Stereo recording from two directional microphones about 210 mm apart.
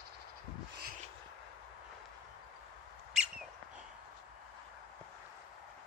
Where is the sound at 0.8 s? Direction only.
40° right (ahead or behind).